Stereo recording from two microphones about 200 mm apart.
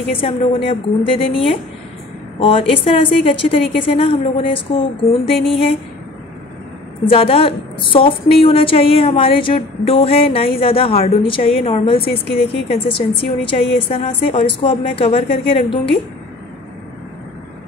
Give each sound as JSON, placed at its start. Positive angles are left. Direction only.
{"t": 0.2, "sound": "a woman's voice", "side_deg": 30}
{"t": 7.1, "sound": "a woman's voice", "side_deg": 30}
{"t": 12.0, "sound": "a woman's voice", "side_deg": 50}
{"t": 12.6, "sound": "a woman's voice", "side_deg": 30}